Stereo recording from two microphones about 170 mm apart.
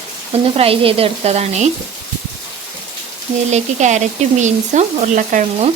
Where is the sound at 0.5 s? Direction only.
35° right (ahead or behind).